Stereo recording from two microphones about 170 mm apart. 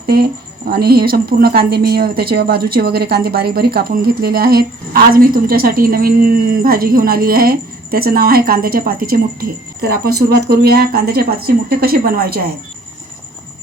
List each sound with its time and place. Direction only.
0.7 s a woman's voice: 65° right (ahead or behind)